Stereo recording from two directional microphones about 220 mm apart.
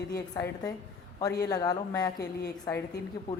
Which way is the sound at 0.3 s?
15° left (ahead or behind).